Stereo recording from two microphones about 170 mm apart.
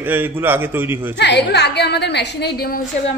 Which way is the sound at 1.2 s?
90° left.